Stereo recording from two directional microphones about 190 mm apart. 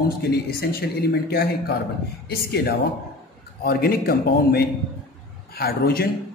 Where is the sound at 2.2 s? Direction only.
55° left (ahead or behind).